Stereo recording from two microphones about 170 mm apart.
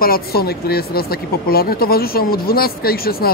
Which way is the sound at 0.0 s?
60° left (ahead or behind).